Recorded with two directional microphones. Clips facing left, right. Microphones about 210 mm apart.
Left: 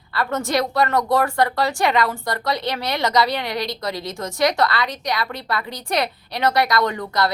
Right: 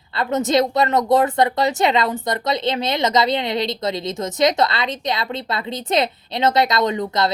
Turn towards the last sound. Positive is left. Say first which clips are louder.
# right 2 dB
turn(degrees=-20)  # may be behind; listen again after turning